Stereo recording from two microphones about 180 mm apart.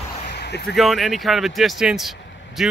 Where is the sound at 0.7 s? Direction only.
Centre (ahead or behind).